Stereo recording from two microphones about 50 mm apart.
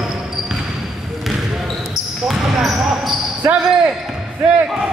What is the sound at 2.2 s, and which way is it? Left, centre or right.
Basketball bounce, centre.